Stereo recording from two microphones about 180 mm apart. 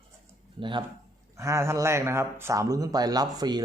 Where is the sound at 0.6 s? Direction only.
25° right (ahead or behind).